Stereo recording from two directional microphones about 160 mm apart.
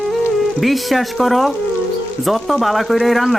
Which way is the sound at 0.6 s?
Centre (ahead or behind).